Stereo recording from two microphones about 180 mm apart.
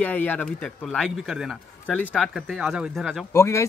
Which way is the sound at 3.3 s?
15° left (ahead or behind).